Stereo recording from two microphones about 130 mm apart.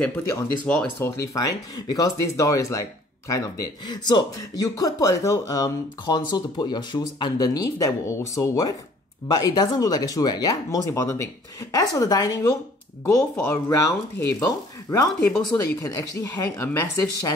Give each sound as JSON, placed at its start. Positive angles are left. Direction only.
{"t": 0.0, "sound": "speech", "side_deg": 20}
{"t": 15.2, "sound": "speech", "side_deg": 5}
{"t": 15.5, "sound": "speech", "side_deg": 25}